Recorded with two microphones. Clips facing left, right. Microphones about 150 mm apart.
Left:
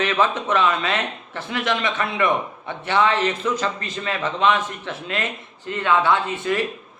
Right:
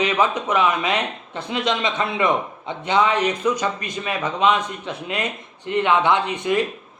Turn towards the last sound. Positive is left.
turn(degrees=-20)  # may be behind; listen again after turning